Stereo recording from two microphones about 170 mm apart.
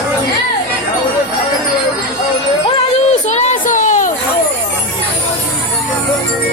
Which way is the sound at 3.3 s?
40° left (ahead or behind).